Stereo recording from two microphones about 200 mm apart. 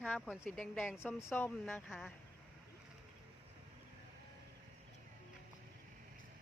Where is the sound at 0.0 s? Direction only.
5° left (ahead or behind).